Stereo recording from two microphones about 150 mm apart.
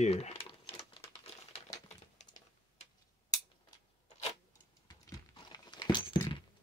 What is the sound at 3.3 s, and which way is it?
Scissors, 25° left (ahead or behind).